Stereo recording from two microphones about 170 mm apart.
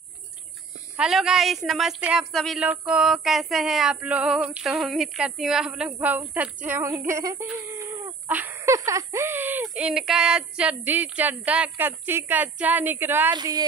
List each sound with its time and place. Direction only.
0.9 s speech: 5° right (ahead or behind)
13.3 s speech: 25° right (ahead or behind)